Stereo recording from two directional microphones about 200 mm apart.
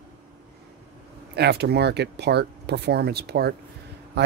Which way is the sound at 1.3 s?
55° right (ahead or behind).